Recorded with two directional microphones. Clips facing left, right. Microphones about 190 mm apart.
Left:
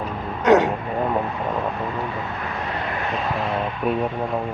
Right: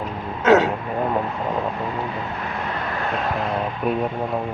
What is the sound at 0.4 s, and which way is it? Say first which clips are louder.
Speech: even; 15° left (ahead or behind).